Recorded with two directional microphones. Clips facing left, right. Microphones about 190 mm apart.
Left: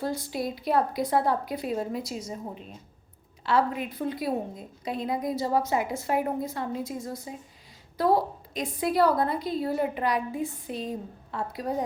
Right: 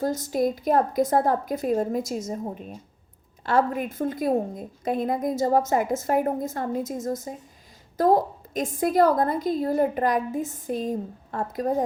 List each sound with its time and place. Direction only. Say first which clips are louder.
0.0 s a woman's voice: right 6 dB; 45° right (ahead or behind)